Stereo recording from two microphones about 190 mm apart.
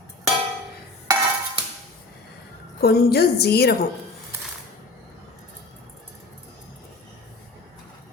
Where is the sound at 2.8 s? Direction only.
55° left (ahead or behind).